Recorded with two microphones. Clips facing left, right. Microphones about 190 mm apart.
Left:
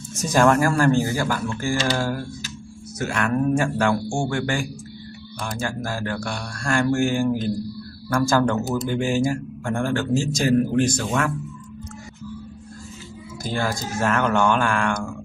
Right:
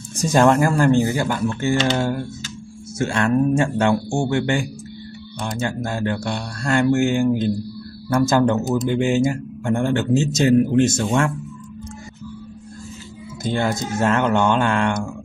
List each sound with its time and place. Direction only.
0.1 s a man's voice: 30° right (ahead or behind)
13.4 s a man's voice: 20° right (ahead or behind)